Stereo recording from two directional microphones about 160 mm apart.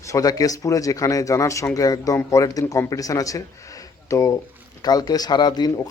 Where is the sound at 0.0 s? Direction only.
20° left (ahead or behind).